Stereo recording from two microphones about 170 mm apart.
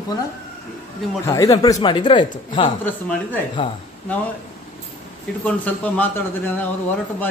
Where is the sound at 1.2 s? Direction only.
20° left (ahead or behind).